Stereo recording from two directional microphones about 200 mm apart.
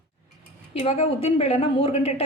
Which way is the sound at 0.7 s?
30° left (ahead or behind).